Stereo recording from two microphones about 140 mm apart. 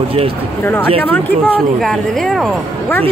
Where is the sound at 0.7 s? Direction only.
15° left (ahead or behind).